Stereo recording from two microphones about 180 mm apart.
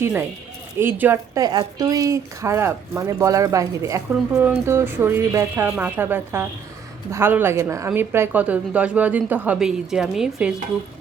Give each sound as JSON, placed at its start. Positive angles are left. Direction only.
{"t": 0.0, "sound": "speech", "side_deg": -10}